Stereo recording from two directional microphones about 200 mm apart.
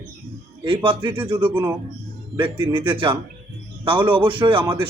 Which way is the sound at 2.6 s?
25° right (ahead or behind).